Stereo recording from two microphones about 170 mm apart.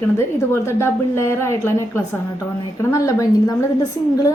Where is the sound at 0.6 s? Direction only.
15° left (ahead or behind).